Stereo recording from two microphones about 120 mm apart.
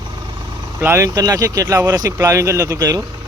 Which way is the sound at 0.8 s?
25° right (ahead or behind).